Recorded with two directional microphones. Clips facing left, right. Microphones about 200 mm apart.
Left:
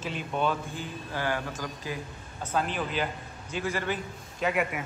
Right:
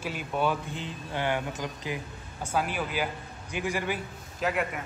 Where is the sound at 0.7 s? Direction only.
20° right (ahead or behind); by 4.7 s centre (ahead or behind).